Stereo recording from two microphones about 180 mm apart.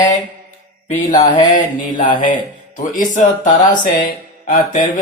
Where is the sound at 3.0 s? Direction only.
45° left (ahead or behind).